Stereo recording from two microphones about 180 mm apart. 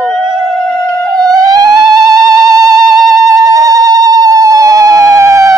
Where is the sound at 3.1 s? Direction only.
20° right (ahead or behind).